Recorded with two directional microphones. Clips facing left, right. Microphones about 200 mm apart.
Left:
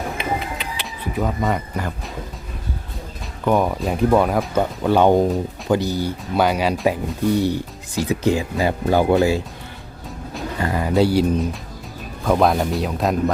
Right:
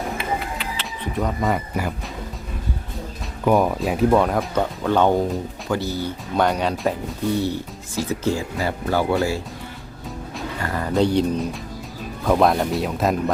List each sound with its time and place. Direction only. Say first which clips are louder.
0.2 s music: left 1 dB; 20° left (ahead or behind)
1.1 s speech: left 1 dB; centre (ahead or behind)
3.4 s speech: right 1 dB; 5° right (ahead or behind); by 9.1 s 20° left (ahead or behind)
10.7 s speech: left 2 dB; 10° left (ahead or behind)